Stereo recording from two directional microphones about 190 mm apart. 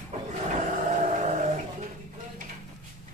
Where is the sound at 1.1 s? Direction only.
40° right (ahead or behind).